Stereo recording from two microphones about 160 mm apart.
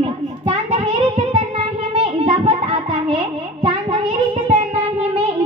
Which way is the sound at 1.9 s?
35° right (ahead or behind).